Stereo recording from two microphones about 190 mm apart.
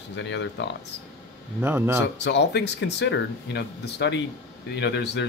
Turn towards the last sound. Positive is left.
turn(degrees=65)  # may be behind; listen again after turning